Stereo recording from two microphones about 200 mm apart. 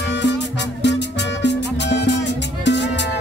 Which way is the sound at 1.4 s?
60° left (ahead or behind).